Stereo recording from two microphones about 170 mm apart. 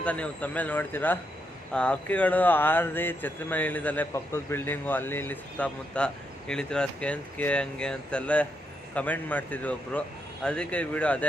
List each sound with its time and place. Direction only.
0.0 s speech: 10° left (ahead or behind)